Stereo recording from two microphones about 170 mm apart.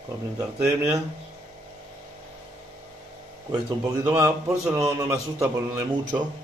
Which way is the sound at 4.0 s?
15° right (ahead or behind).